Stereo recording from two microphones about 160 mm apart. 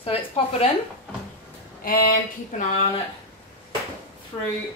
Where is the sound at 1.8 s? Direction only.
60° left (ahead or behind).